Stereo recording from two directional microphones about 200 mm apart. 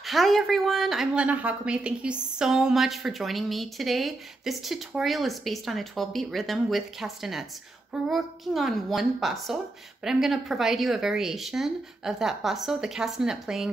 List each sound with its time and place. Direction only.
0.0 s a woman's voice: centre (ahead or behind)